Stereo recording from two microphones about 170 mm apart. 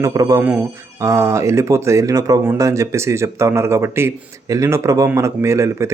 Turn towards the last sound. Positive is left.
turn(degrees=-15)  # may be behind; listen again after turning